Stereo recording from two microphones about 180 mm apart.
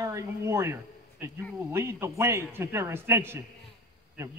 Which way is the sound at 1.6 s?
15° right (ahead or behind).